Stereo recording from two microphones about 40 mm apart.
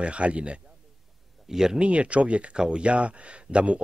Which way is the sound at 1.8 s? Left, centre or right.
Right.